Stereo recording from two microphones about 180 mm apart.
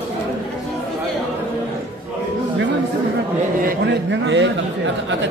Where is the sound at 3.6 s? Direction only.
75° right (ahead or behind).